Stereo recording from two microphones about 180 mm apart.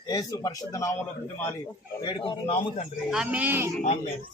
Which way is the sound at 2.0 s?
25° left (ahead or behind).